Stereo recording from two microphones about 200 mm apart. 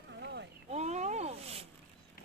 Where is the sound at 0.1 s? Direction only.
60° right (ahead or behind).